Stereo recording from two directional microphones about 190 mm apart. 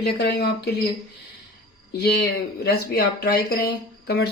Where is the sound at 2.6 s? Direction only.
55° left (ahead or behind).